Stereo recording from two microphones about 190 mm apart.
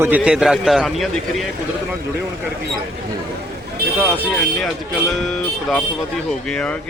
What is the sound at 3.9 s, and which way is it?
Speech, 10° right (ahead or behind).